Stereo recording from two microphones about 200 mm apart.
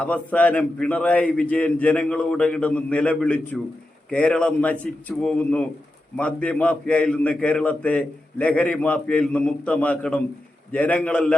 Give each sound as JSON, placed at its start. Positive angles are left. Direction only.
{"t": 0.0, "sound": "a man's voice", "side_deg": 5}